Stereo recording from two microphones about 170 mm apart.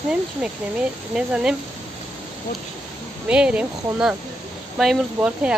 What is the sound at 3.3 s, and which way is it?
Speech, 5° right (ahead or behind).